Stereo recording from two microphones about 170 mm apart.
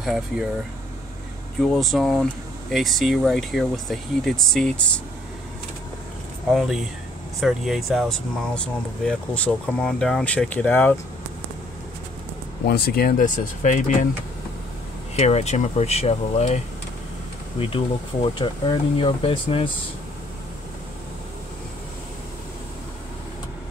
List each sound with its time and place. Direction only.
0.0 s speech: centre (ahead or behind)
1.6 s speech: centre (ahead or behind)
6.5 s speech: 5° right (ahead or behind)
12.6 s speech: 65° left (ahead or behind); by 14.0 s 45° left (ahead or behind)
15.1 s speech: 40° left (ahead or behind)